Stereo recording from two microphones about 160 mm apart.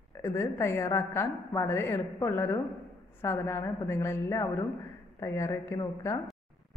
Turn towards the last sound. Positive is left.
turn(degrees=20)  # may be behind; listen again after turning